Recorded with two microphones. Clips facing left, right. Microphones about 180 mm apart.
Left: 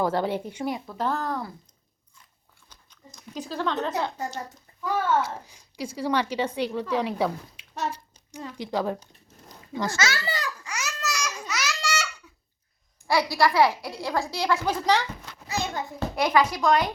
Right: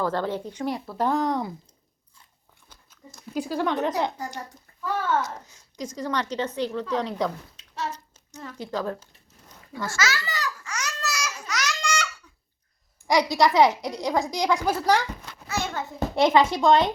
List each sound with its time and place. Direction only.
0.0 s a child's voice: 15° left (ahead or behind)
0.9 s speech: 15° right (ahead or behind)
3.3 s speech: 10° right (ahead or behind)
4.8 s a child's voice: 10° left (ahead or behind)
10.1 s a sound: 30° left (ahead or behind)
10.7 s babbling: 5° left (ahead or behind)
13.1 s speech: 20° right (ahead or behind)
16.1 s speech: 25° right (ahead or behind)